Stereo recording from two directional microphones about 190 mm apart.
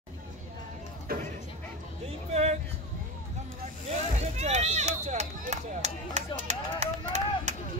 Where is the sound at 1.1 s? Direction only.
50° right (ahead or behind).